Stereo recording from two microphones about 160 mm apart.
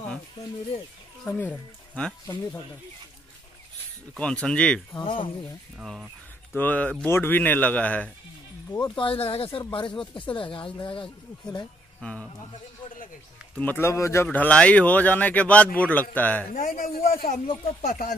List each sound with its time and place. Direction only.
1.2 s speech: 10° left (ahead or behind)
4.2 s speech: 5° left (ahead or behind)
4.9 s speech: 30° left (ahead or behind)
5.8 s speech: 5° right (ahead or behind)
6.5 s speech: 10° left (ahead or behind)
8.8 s speech: 30° left (ahead or behind)
12.0 s speech: 5° left (ahead or behind)
13.6 s speech: 15° left (ahead or behind)
16.5 s a man's voice: 60° left (ahead or behind)